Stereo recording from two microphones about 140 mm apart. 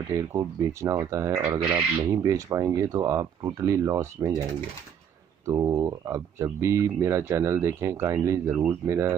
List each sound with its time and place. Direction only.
0.1 s speech: 25° right (ahead or behind)
1.6 s speech: 10° right (ahead or behind)
2.0 s speech: 20° right (ahead or behind)
5.5 s speech: 25° right (ahead or behind)